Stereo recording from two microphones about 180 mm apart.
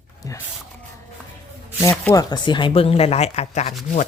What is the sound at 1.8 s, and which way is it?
Speech, 15° left (ahead or behind).